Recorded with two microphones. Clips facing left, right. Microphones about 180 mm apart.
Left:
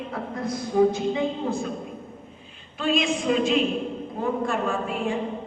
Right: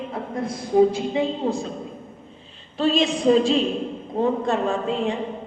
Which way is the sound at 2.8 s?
35° right (ahead or behind).